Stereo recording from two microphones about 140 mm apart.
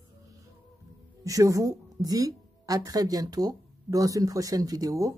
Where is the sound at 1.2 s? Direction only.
25° right (ahead or behind).